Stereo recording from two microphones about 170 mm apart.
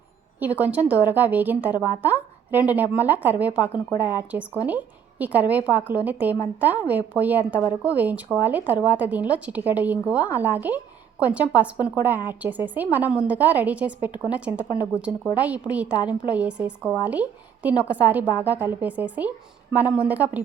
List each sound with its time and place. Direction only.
0.3 s a woman's voice: 10° right (ahead or behind)
14.6 s speech: 20° left (ahead or behind)
15.4 s speech: 10° right (ahead or behind)